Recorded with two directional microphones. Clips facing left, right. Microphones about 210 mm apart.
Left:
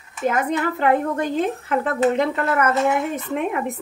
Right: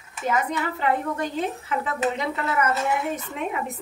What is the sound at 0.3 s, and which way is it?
A woman's voice, 55° left (ahead or behind).